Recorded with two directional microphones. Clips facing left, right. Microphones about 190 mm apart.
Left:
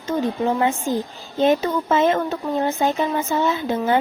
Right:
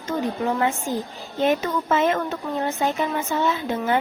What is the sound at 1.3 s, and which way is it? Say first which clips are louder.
A woman's voice: left 3 dB; 30° left (ahead or behind).